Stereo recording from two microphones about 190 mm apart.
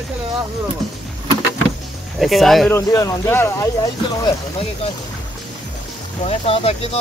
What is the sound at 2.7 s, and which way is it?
Speech, 15° left (ahead or behind).